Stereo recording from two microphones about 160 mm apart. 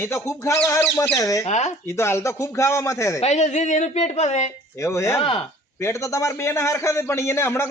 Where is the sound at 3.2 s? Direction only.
45° left (ahead or behind).